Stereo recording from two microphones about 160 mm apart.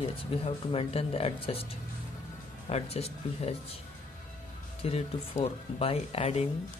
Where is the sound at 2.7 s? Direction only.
40° left (ahead or behind).